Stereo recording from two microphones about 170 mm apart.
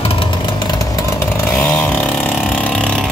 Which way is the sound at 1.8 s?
10° left (ahead or behind).